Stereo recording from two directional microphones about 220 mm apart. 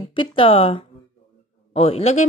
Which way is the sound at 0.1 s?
25° left (ahead or behind).